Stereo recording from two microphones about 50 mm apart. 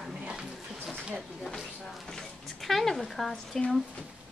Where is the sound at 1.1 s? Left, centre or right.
Centre.